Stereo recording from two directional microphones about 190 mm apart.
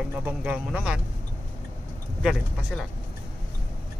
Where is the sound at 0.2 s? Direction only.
10° right (ahead or behind).